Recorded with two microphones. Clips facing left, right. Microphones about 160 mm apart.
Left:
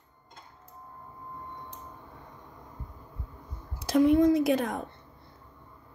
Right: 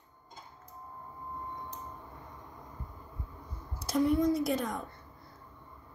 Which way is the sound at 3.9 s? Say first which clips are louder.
Left 6 dB; 90° left.